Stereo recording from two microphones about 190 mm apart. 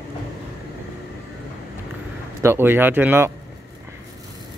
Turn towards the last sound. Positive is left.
turn(degrees=-10)  # may be behind; listen again after turning